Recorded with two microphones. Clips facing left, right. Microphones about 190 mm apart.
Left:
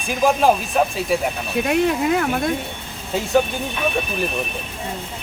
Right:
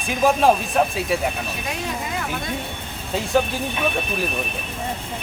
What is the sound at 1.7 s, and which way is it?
Speech, 60° left (ahead or behind).